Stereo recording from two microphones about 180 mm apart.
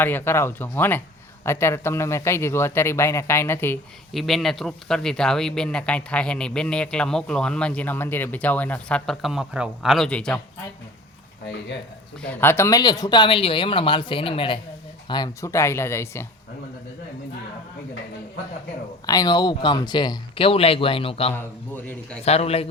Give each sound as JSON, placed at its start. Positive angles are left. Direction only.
{"t": 0.0, "sound": "a man's voice", "side_deg": 10}
{"t": 4.1, "sound": "speech", "side_deg": 0}
{"t": 12.2, "sound": "a man's voice", "side_deg": 10}
{"t": 19.0, "sound": "a man's voice", "side_deg": 20}